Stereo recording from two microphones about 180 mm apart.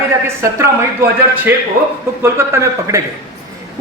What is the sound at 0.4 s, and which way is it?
Speech, 15° right (ahead or behind).